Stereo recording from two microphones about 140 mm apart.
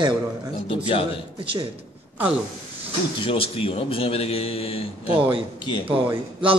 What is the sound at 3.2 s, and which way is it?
A man's voice, 40° left (ahead or behind).